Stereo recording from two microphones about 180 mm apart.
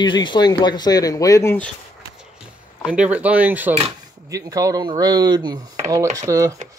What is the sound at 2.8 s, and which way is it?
Speech, 5° right (ahead or behind).